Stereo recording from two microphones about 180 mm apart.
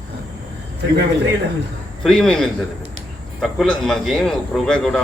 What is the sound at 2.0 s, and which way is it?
A man's voice, 5° left (ahead or behind).